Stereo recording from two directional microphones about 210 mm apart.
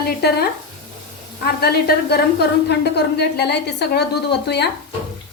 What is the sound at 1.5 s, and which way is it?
A woman's voice, 50° left (ahead or behind).